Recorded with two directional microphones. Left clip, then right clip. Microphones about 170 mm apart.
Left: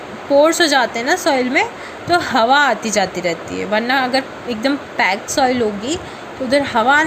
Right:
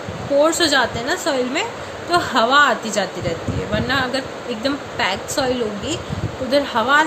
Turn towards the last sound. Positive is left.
turn(degrees=30)  # may be behind; listen again after turning